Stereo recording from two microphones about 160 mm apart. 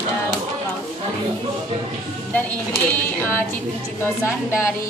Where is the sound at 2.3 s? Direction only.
15° left (ahead or behind).